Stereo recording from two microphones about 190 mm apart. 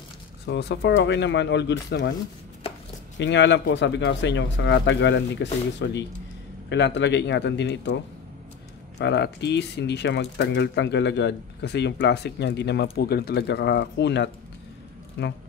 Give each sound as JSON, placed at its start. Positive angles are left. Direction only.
{"t": 0.5, "sound": "speech", "side_deg": 65}
{"t": 3.2, "sound": "speech", "side_deg": 70}